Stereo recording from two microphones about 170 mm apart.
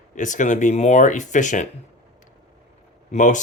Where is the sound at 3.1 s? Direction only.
45° left (ahead or behind).